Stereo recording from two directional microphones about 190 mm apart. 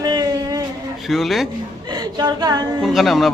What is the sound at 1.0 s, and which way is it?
Speech, centre (ahead or behind).